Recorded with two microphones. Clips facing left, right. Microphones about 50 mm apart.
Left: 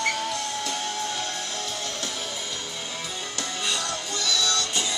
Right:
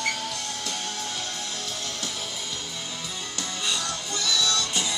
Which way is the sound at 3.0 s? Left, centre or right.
Centre.